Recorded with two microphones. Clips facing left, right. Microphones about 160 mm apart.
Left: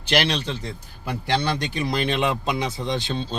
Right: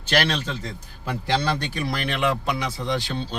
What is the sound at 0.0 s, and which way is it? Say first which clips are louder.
Speech: left 1 dB; 15° left (ahead or behind).